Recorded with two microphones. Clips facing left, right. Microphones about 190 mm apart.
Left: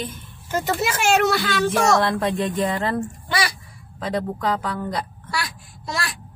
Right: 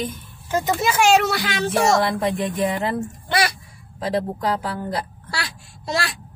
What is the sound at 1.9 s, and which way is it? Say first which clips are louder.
Speech: even; 15° right (ahead or behind).